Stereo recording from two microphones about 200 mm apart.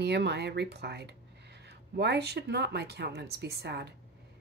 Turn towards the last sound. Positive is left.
turn(degrees=-55)  # may be behind; listen again after turning